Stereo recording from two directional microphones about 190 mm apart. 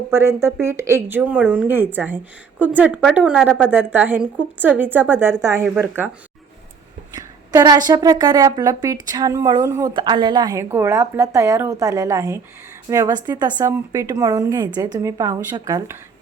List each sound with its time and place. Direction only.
0.1 s a woman's voice: 15° right (ahead or behind); by 3.7 s 5° left (ahead or behind)
3.7 s a woman's voice: 10° right (ahead or behind)
7.2 s a woman's voice: 20° right (ahead or behind)